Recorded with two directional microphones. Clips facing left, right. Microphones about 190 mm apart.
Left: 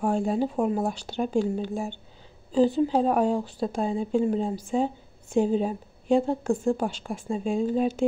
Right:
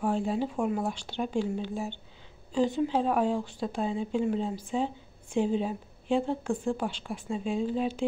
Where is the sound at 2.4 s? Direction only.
35° left (ahead or behind).